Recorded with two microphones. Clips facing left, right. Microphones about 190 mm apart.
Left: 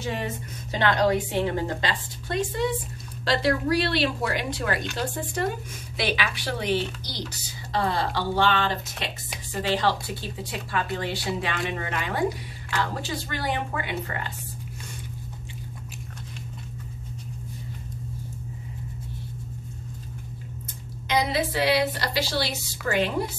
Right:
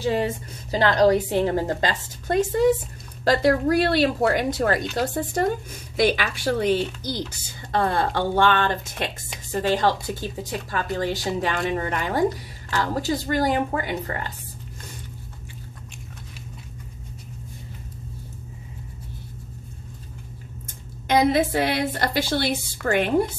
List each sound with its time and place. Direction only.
0.0 s a woman's voice: 35° right (ahead or behind)
20.6 s a woman's voice: 50° right (ahead or behind)